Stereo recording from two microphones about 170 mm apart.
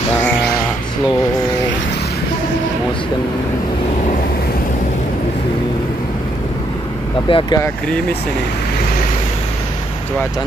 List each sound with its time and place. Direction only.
7.2 s speech: 30° left (ahead or behind)